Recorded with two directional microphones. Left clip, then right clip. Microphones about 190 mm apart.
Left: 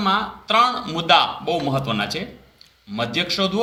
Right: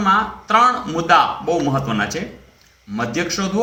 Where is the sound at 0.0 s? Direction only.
40° left (ahead or behind).